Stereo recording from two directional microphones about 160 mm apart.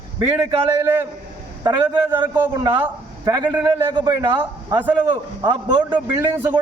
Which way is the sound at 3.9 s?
30° right (ahead or behind).